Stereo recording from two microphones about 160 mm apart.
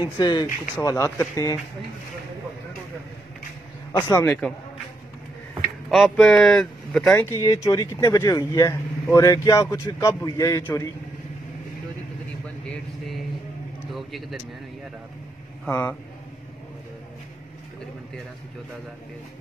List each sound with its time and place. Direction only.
0.0 s a man's voice: 25° left (ahead or behind)
4.2 s speech: 5° left (ahead or behind)
5.9 s speech: centre (ahead or behind)
7.3 s a man's voice: 20° left (ahead or behind)
13.9 s speech: centre (ahead or behind)
15.6 s speech: 5° left (ahead or behind)